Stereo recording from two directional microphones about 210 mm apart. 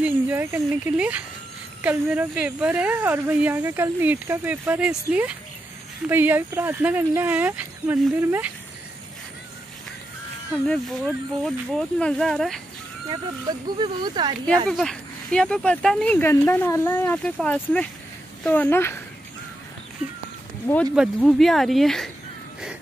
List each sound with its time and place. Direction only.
0.0 s speech: 10° right (ahead or behind)
11.4 s speech: 5° left (ahead or behind)
13.1 s speech: 20° right (ahead or behind)
14.7 s a woman's voice: centre (ahead or behind)
20.6 s a woman's voice: 5° left (ahead or behind)